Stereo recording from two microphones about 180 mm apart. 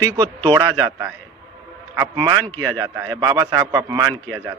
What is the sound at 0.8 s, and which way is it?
A man's voice, 10° right (ahead or behind).